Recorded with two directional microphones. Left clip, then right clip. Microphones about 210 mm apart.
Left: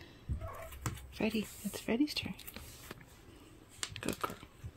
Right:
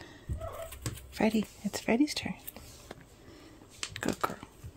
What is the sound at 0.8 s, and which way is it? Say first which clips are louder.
Speech: right 7 dB; 20° right (ahead or behind).